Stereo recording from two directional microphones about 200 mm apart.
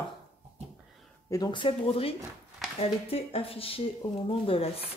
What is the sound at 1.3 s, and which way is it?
Speech, 20° left (ahead or behind).